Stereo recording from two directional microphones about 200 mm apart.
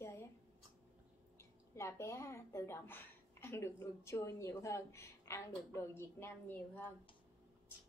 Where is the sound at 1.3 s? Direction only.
15° left (ahead or behind).